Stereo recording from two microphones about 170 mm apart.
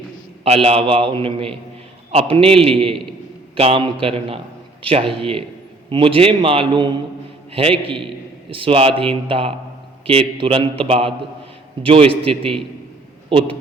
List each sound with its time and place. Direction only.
0.4 s a man's voice: 35° right (ahead or behind)